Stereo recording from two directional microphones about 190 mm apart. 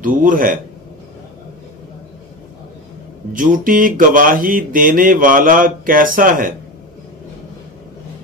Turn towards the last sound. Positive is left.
turn(degrees=-45)  # may be behind; listen again after turning